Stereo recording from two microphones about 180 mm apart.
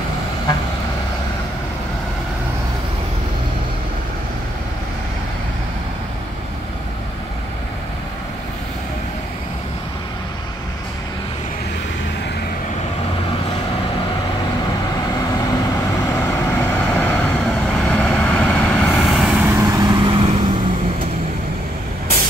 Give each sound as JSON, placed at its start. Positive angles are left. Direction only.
{"t": 16.3, "sound": "vehicle", "side_deg": 15}
{"t": 19.4, "sound": "vehicle", "side_deg": -15}